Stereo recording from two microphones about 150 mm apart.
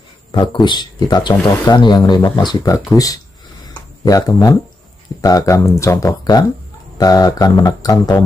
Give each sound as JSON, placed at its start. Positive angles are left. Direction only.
{"t": 0.3, "sound": "speech", "side_deg": 30}
{"t": 3.6, "sound": "a sound", "side_deg": 25}
{"t": 5.2, "sound": "speech", "side_deg": 20}